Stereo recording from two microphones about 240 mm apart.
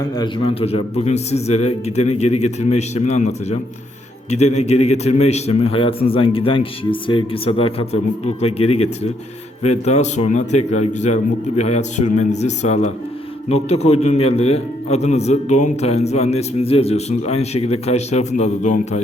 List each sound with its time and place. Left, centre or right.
0.2 s a man's voice: left
4.6 s a man's voice: left